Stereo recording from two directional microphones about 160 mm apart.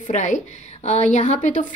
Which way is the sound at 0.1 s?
50° left (ahead or behind).